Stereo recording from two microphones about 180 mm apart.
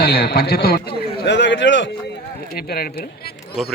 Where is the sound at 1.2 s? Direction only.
80° left.